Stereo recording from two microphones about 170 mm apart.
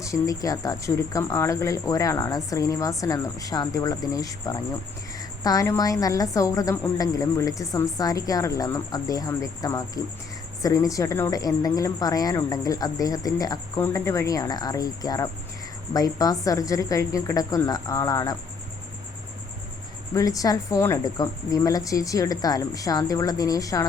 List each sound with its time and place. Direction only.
0.0 s a woman's voice: 20° left (ahead or behind)
20.1 s a woman's voice: 20° left (ahead or behind)